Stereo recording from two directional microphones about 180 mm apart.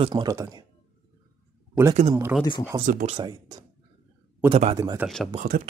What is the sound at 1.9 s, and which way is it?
Speech, 35° right (ahead or behind).